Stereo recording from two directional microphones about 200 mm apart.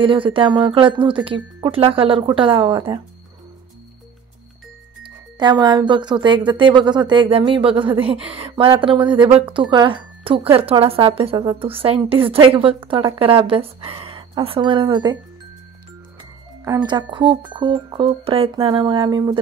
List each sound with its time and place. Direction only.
0.0 s speech: 25° right (ahead or behind)
5.4 s speech: 25° right (ahead or behind)
16.2 s speech: 20° right (ahead or behind)